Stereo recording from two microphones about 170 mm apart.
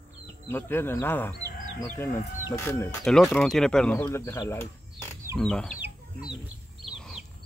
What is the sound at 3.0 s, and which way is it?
Speech, centre (ahead or behind).